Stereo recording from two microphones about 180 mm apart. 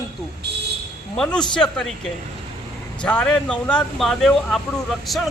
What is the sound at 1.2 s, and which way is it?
A man's voice, 5° left (ahead or behind).